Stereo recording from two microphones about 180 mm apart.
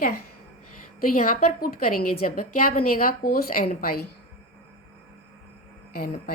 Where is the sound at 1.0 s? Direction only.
50° left (ahead or behind).